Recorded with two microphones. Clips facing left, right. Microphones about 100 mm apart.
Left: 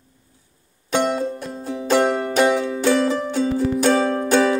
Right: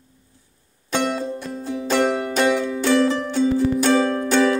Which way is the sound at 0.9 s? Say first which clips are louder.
Left 2 dB; 10° left (ahead or behind).